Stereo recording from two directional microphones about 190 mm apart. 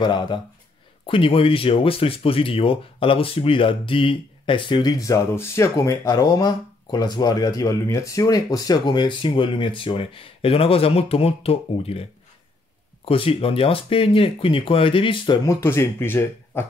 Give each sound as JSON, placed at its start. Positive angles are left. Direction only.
{"t": 0.0, "sound": "speech", "side_deg": 25}